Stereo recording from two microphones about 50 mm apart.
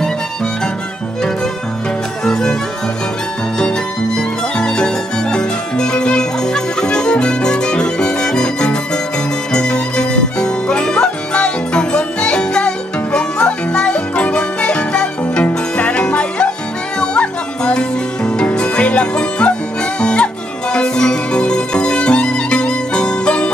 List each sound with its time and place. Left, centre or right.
2.2 s music: centre
4.6 s music: centre